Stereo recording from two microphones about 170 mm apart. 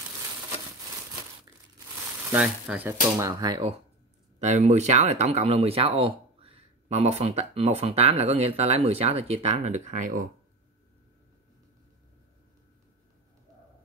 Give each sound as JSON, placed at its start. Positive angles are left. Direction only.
{"t": 2.3, "sound": "speech", "side_deg": -5}
{"t": 4.4, "sound": "speech", "side_deg": -45}